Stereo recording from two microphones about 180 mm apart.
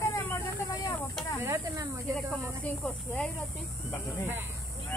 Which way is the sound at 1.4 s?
15° right (ahead or behind).